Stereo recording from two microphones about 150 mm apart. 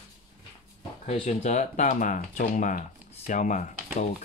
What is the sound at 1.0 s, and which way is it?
Speech, 45° left (ahead or behind).